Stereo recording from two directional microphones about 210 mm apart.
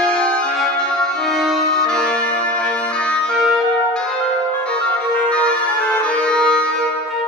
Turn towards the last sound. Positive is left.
turn(degrees=5)  # may be behind; listen again after turning